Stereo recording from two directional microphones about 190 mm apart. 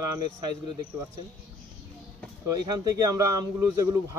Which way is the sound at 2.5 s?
20° right (ahead or behind).